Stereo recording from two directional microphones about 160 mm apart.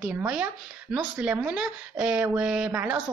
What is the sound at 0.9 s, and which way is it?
A woman's voice, 10° right (ahead or behind).